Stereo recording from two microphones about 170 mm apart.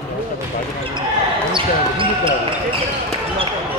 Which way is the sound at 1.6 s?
30° right (ahead or behind).